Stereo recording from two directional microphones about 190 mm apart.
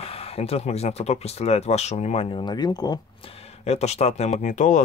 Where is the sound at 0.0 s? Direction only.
30° left (ahead or behind).